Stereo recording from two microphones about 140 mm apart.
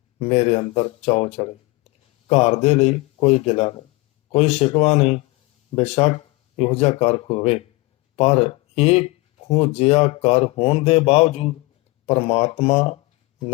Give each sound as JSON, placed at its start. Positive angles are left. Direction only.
{"t": 0.2, "sound": "speech", "side_deg": 45}